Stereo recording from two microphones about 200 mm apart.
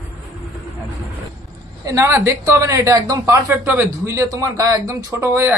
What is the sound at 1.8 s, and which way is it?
Speech, 15° right (ahead or behind).